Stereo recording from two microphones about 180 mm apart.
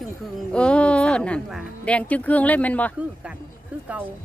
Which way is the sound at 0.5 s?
5° left (ahead or behind).